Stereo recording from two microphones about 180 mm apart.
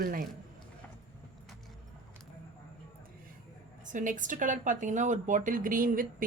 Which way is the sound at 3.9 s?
45° right (ahead or behind).